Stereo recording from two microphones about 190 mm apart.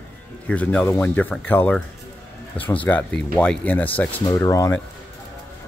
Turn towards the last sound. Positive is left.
turn(degrees=15)  # may be behind; listen again after turning